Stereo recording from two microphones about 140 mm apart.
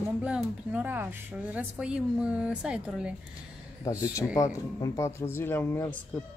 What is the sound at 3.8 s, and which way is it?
Speech, 25° left (ahead or behind).